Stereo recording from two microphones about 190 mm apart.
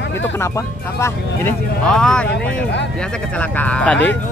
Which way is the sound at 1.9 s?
5° left (ahead or behind).